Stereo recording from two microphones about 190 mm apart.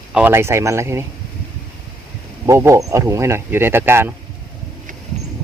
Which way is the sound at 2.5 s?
15° right (ahead or behind).